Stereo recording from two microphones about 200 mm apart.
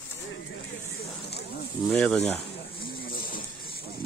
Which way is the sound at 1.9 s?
5° left (ahead or behind).